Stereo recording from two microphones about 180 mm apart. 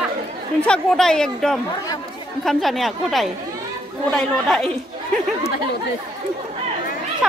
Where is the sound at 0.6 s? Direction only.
5° left (ahead or behind).